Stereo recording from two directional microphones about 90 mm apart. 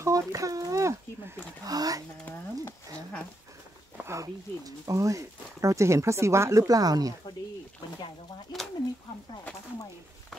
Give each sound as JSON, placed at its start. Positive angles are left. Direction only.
{"t": 0.0, "sound": "a sound", "side_deg": -40}
{"t": 1.6, "sound": "speech", "side_deg": -45}
{"t": 4.0, "sound": "speech", "side_deg": -35}
{"t": 8.5, "sound": "speech", "side_deg": 50}